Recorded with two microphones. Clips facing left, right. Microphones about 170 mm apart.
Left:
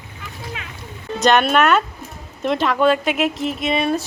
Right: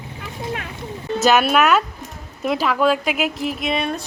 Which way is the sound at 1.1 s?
5° right (ahead or behind).